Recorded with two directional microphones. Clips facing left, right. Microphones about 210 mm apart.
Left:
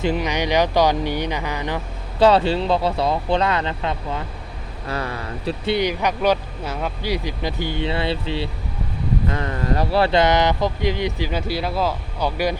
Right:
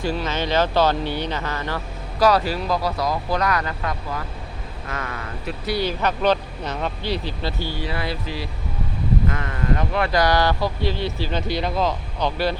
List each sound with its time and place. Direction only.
0.0 s speech: 15° left (ahead or behind)
2.1 s speech: 25° left (ahead or behind); by 12.5 s 10° left (ahead or behind)